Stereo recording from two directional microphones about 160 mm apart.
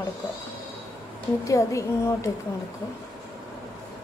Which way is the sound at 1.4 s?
20° left (ahead or behind).